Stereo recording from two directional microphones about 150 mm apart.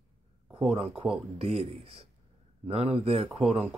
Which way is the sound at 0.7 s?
40° right (ahead or behind).